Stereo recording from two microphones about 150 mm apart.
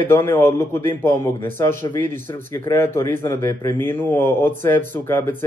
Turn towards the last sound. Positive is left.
turn(degrees=15)  # may be behind; listen again after turning